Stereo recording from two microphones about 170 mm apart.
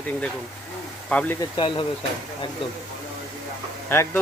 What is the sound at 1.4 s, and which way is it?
Speech, 25° left (ahead or behind).